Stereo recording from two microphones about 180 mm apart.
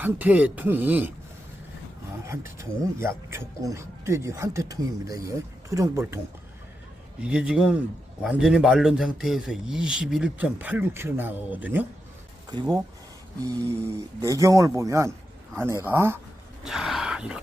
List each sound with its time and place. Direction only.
0.0 s speech: 10° right (ahead or behind)
2.2 s speech: 15° right (ahead or behind)
7.2 s speech: 5° right (ahead or behind)
12.5 s speech: 20° right (ahead or behind)
13.8 s speech: 15° right (ahead or behind)
16.6 s speech: centre (ahead or behind)